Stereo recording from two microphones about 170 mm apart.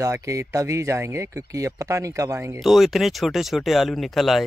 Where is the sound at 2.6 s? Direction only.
Centre (ahead or behind).